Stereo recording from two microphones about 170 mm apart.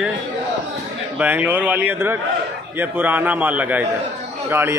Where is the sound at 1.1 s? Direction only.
10° right (ahead or behind).